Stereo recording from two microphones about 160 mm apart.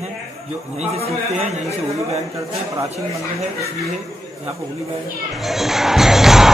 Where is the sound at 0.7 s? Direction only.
40° right (ahead or behind).